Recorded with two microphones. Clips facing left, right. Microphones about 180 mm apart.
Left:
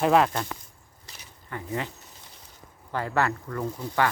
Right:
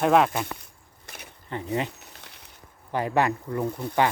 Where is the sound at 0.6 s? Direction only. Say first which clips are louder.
Right 1 dB; 65° right (ahead or behind).